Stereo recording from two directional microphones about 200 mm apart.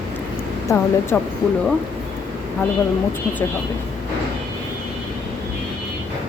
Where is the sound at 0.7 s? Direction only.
15° left (ahead or behind).